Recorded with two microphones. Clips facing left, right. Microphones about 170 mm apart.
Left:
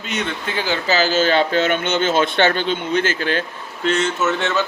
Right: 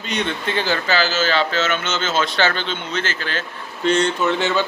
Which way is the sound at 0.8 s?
45° left (ahead or behind).